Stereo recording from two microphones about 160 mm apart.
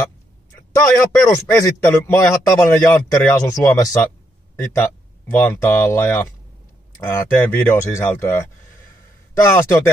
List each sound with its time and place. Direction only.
0.7 s a man's voice: 20° left (ahead or behind)